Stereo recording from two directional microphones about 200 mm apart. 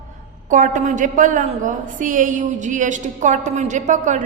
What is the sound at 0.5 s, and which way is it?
A woman's voice, 40° right (ahead or behind).